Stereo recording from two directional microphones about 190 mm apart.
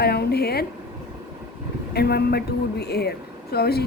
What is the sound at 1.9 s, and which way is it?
Speech, 55° left (ahead or behind).